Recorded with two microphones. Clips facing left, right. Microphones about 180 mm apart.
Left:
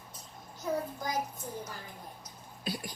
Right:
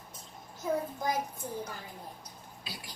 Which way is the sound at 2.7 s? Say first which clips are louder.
Left 10 dB; 50° left (ahead or behind).